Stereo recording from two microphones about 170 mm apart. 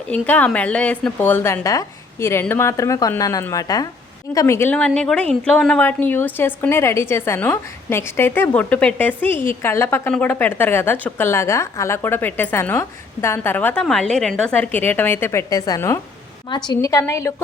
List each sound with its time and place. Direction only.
0.1 s a woman's voice: 10° left (ahead or behind)